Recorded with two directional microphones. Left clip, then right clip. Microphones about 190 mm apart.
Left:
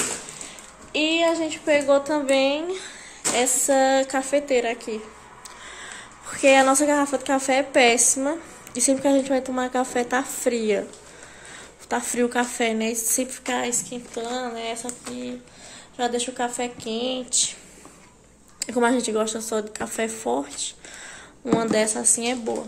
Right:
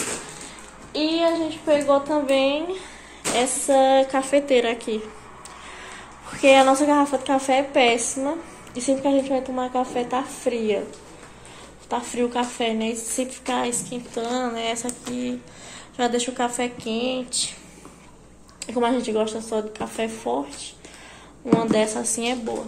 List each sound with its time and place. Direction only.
1.7 s a woman's voice: 35° left (ahead or behind); by 5.0 s 10° left (ahead or behind)
6.2 s a woman's voice: 25° left (ahead or behind); by 10.8 s 40° left (ahead or behind)
11.9 s a woman's voice: 40° left (ahead or behind); by 14.2 s 20° left (ahead or behind)
14.2 s speech: 10° left (ahead or behind); by 17.5 s 25° left (ahead or behind)
18.6 s a woman's voice: 40° left (ahead or behind)